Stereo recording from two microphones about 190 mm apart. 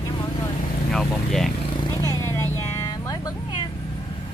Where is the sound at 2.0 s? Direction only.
15° left (ahead or behind).